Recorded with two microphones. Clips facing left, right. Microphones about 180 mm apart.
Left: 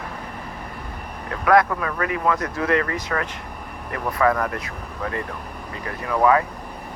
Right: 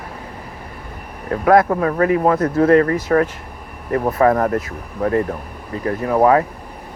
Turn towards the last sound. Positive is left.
turn(degrees=-40)  # may be behind; listen again after turning